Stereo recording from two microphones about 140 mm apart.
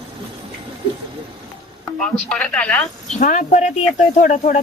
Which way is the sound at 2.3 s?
10° left (ahead or behind).